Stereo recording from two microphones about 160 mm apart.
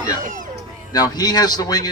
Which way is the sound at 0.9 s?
25° left (ahead or behind).